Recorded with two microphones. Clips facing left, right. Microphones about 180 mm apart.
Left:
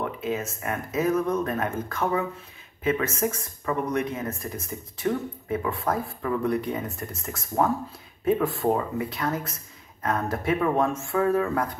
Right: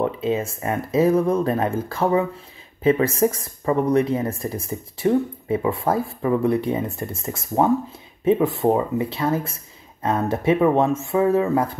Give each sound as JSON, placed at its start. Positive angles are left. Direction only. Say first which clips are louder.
{"t": 0.0, "sound": "speech", "louder": "right 7 dB", "side_deg": -30}